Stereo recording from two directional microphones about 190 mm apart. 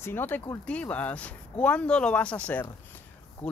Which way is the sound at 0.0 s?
10° left (ahead or behind).